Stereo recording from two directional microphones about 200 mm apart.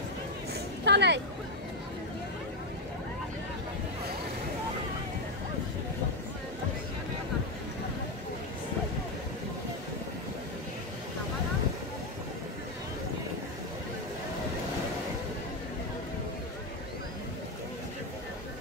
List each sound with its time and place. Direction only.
0.8 s speech: 60° right (ahead or behind)